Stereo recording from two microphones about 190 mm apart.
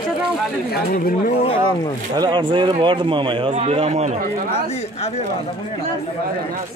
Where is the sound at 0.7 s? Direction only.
50° left (ahead or behind).